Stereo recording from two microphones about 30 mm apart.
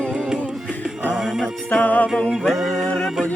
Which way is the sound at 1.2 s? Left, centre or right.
Centre.